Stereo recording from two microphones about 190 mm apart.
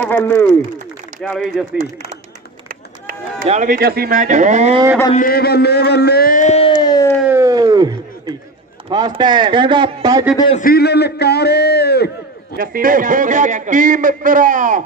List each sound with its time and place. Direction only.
0.0 s speech: 10° left (ahead or behind)
1.2 s speech: centre (ahead or behind)
2.7 s run: 50° right (ahead or behind)
3.4 s speech: 40° right (ahead or behind)
5.1 s speech: 50° left (ahead or behind)
6.8 s a sound: 20° left (ahead or behind)
7.2 s a sound: 15° right (ahead or behind)
8.8 s speech: 25° right (ahead or behind)
10.3 s a man's voice: 25° left (ahead or behind)
10.6 s a man's voice: 55° left (ahead or behind)
12.5 s a man's voice: 50° right (ahead or behind)